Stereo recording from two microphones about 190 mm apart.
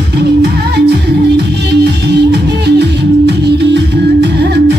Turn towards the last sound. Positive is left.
turn(degrees=-60)  # may be behind; listen again after turning